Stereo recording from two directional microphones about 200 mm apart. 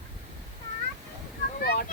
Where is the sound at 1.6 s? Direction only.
50° left (ahead or behind).